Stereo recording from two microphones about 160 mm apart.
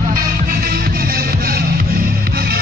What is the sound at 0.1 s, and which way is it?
Music, 65° right (ahead or behind).